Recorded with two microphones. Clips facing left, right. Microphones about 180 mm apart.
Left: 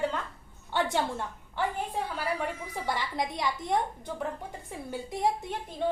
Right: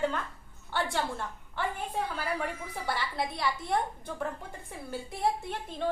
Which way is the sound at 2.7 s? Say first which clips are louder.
Left 1 dB; 15° left (ahead or behind).